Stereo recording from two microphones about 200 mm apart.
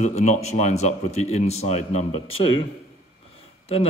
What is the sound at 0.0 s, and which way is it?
Speech, 35° left (ahead or behind).